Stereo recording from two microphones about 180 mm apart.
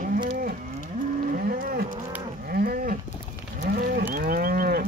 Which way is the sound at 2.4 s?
55° right (ahead or behind).